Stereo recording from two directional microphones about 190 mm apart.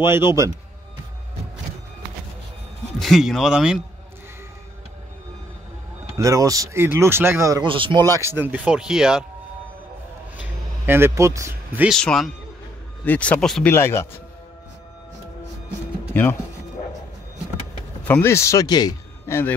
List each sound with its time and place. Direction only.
0.0 s speech: 10° right (ahead or behind)
3.0 s speech: centre (ahead or behind)
6.1 s speech: 15° right (ahead or behind)
8.2 s speech: 10° right (ahead or behind)
10.9 s speech: 10° right (ahead or behind)
11.9 s speech: centre (ahead or behind)
13.7 s speech: 15° left (ahead or behind)
16.1 s speech: 10° left (ahead or behind)
18.0 s speech: 10° left (ahead or behind)